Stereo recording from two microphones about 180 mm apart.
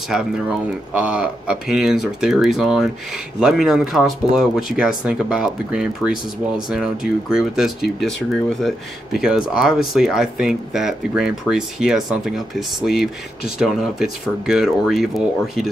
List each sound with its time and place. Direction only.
0.1 s speech: centre (ahead or behind)